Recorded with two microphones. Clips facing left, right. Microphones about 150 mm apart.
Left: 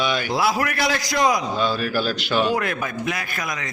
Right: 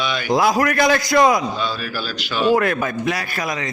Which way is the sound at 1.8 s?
50° left (ahead or behind).